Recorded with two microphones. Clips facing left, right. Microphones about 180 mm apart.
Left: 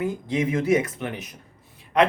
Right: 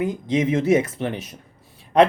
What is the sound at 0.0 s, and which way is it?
Speech, 20° right (ahead or behind).